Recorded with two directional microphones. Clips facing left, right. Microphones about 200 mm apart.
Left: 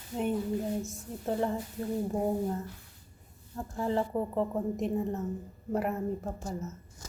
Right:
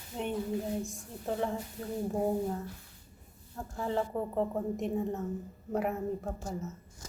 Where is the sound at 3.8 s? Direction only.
Centre (ahead or behind).